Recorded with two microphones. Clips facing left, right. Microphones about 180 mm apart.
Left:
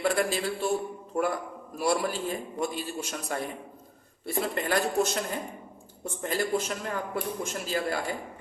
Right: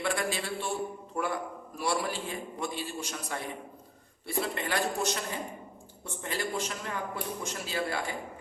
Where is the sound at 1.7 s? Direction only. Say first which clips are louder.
Left 4 dB; 45° left (ahead or behind).